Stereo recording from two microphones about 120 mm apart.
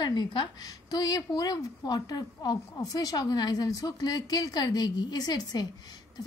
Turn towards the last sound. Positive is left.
turn(degrees=35)  # may be behind; listen again after turning